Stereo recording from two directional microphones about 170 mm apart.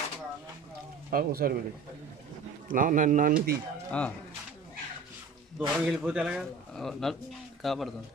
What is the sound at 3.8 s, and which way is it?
Speech, 5° left (ahead or behind).